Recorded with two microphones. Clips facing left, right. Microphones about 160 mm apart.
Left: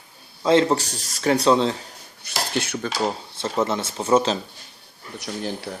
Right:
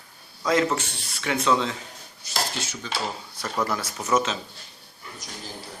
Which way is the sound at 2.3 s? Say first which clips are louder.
Left 4 dB; 60° left (ahead or behind).